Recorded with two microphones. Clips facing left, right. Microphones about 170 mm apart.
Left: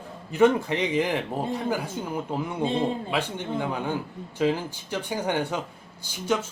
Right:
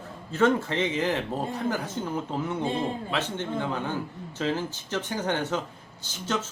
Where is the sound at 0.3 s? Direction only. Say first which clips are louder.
Left 3 dB; 15° left (ahead or behind).